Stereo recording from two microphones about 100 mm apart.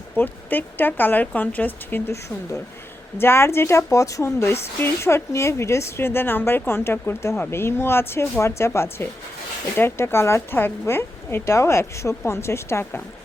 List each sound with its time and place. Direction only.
0.2 s speech: 20° left (ahead or behind)